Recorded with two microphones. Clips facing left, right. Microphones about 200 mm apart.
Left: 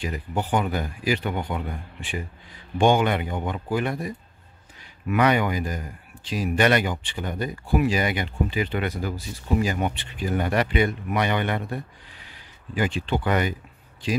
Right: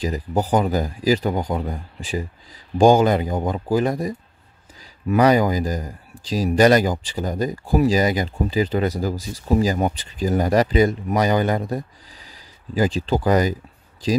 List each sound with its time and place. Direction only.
0.0 s speech: 35° right (ahead or behind)